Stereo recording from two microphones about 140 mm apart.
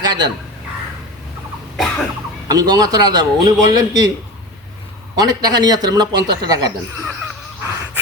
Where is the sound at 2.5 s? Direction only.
25° right (ahead or behind).